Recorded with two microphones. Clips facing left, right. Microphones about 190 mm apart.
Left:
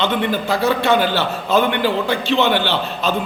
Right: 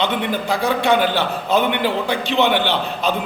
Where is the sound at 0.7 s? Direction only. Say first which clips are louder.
Even; 15° right (ahead or behind).